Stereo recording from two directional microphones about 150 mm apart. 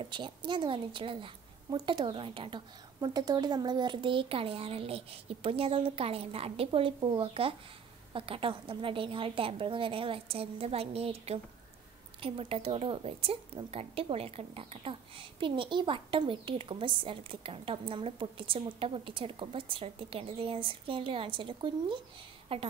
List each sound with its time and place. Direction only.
0.0 s a woman's voice: 30° right (ahead or behind)